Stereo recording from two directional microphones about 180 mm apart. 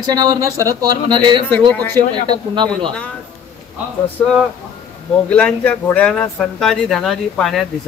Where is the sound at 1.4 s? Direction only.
10° left (ahead or behind).